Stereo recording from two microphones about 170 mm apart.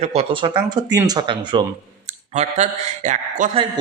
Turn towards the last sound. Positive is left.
turn(degrees=-40)  # may be behind; listen again after turning